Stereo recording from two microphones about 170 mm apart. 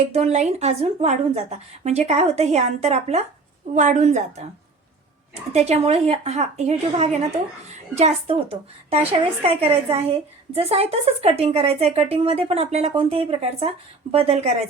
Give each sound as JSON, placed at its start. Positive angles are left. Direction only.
{"t": 0.1, "sound": "a woman's voice", "side_deg": -40}
{"t": 5.5, "sound": "a woman's voice", "side_deg": -40}